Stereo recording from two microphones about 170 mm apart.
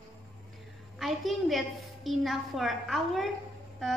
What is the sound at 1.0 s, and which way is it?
A woman's voice, centre (ahead or behind).